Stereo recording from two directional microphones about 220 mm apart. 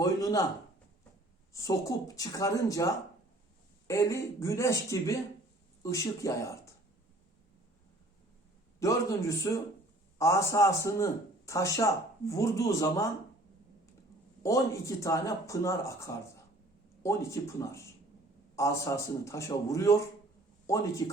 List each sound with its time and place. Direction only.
0.0 s a man's voice: 15° left (ahead or behind)
1.5 s a man's voice: 15° left (ahead or behind)
8.8 s a man's voice: 15° left (ahead or behind)
14.4 s a man's voice: 15° left (ahead or behind)